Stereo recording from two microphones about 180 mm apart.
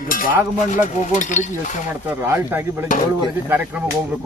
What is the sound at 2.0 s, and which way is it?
Speech, 15° right (ahead or behind).